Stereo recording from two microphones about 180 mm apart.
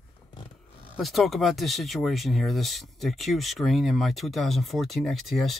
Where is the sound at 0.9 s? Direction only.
Centre (ahead or behind).